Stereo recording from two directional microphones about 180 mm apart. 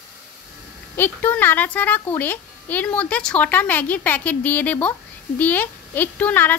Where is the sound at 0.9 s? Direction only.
10° left (ahead or behind).